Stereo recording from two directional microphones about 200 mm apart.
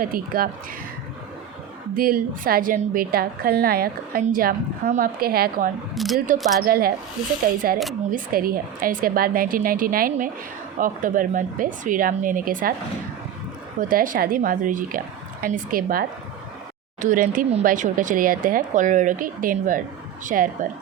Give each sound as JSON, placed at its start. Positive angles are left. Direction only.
{"t": 0.0, "sound": "a woman's voice", "side_deg": -45}
{"t": 1.9, "sound": "a woman's voice", "side_deg": -45}
{"t": 5.9, "sound": "speech", "side_deg": 0}
{"t": 6.6, "sound": "a woman's voice", "side_deg": -50}
{"t": 8.1, "sound": "a woman's voice", "side_deg": -45}
{"t": 13.7, "sound": "a woman's voice", "side_deg": -45}